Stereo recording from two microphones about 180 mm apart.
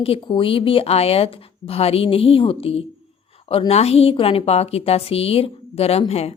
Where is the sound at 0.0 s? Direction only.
30° left (ahead or behind).